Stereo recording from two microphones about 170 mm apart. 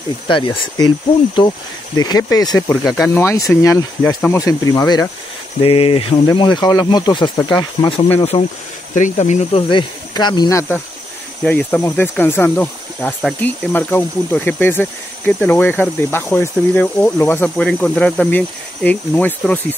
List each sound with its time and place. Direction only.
0.3 s speech: 30° left (ahead or behind)
5.6 s speech: 35° left (ahead or behind)
8.9 s speech: 45° left (ahead or behind)
9.7 s speech: 25° left (ahead or behind)
11.4 s speech: 10° left (ahead or behind)